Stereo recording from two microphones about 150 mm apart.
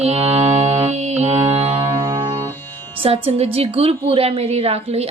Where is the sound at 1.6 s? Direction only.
40° right (ahead or behind).